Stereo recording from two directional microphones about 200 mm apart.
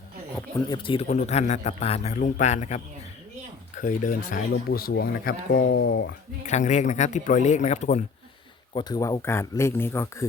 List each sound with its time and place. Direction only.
0.7 s a man's voice: 25° left (ahead or behind); by 6.1 s 55° left (ahead or behind)
6.4 s a man's voice: 35° left (ahead or behind)
8.7 s speech: 20° left (ahead or behind)